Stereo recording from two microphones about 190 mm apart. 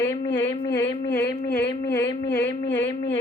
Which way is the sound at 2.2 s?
65° left (ahead or behind).